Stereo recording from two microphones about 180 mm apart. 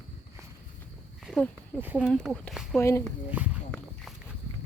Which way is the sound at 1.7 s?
10° right (ahead or behind).